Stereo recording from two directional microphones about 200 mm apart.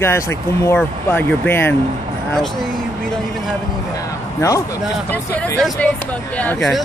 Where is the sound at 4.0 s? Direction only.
15° left (ahead or behind).